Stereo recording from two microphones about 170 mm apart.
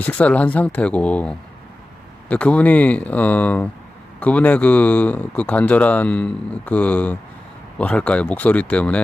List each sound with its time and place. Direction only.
0.0 s speech: 5° left (ahead or behind)